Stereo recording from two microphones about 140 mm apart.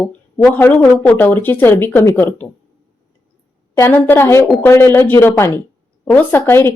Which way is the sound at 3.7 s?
15° left (ahead or behind).